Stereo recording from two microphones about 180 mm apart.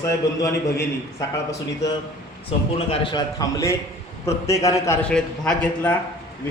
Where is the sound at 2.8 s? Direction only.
25° left (ahead or behind); by 5.9 s 5° left (ahead or behind).